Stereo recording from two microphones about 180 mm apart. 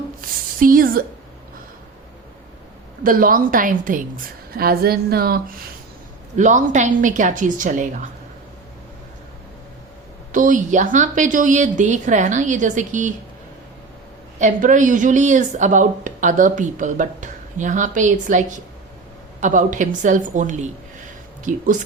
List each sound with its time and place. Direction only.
0.6 s a woman's voice: 50° right (ahead or behind)
3.0 s a woman's voice: 50° right (ahead or behind)
6.3 s a woman's voice: 45° right (ahead or behind)
10.3 s a woman's voice: 45° right (ahead or behind)
14.3 s a woman's voice: 45° right (ahead or behind)